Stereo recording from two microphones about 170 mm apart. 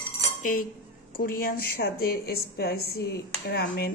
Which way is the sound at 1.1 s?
60° left (ahead or behind).